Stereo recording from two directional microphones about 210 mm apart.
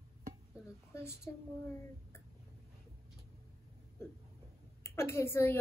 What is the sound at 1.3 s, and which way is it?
Speech, 5° left (ahead or behind).